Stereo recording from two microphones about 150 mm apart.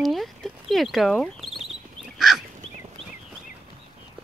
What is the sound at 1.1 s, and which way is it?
Speech, 5° left (ahead or behind).